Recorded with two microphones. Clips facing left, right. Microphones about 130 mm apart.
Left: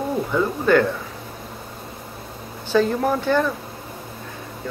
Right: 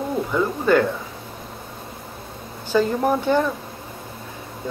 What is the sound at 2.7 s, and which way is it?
Speech, 10° right (ahead or behind).